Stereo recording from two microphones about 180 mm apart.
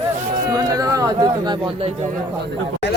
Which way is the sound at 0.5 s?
20° right (ahead or behind).